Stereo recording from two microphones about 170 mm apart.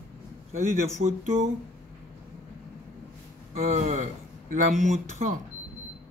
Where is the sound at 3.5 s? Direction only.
45° right (ahead or behind).